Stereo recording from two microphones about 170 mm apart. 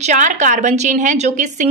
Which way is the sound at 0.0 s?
45° right (ahead or behind).